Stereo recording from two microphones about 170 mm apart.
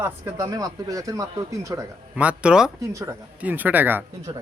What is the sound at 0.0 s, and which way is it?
Speech, 15° right (ahead or behind).